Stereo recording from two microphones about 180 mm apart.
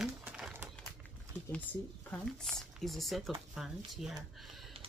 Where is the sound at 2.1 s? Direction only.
5° left (ahead or behind).